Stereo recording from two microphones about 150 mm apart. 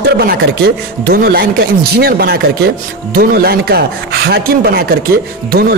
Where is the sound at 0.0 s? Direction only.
90° right.